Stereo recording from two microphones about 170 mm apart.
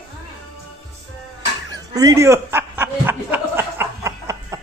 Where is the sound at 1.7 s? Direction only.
20° right (ahead or behind).